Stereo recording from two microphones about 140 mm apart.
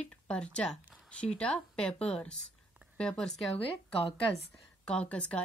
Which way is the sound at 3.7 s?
40° left (ahead or behind).